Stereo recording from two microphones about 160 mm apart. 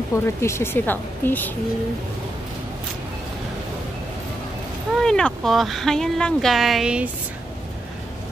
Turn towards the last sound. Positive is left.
turn(degrees=-5)  # may be behind; listen again after turning